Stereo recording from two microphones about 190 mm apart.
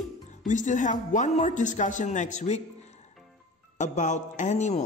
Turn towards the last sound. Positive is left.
turn(degrees=40)  # may be behind; listen again after turning